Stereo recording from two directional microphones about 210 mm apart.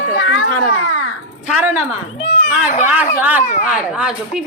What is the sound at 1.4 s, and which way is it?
A woman's voice, 10° right (ahead or behind).